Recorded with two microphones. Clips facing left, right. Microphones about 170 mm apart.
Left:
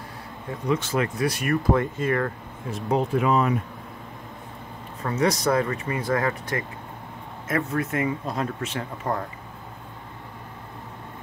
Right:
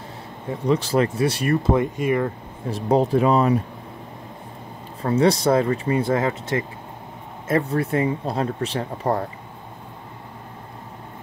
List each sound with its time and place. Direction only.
0.7 s speech: 35° right (ahead or behind); by 2.3 s 15° right (ahead or behind)
2.7 s speech: 35° right (ahead or behind)
5.0 s speech: 30° right (ahead or behind)